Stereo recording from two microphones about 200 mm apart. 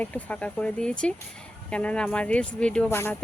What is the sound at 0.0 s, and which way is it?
Speech, 5° left (ahead or behind).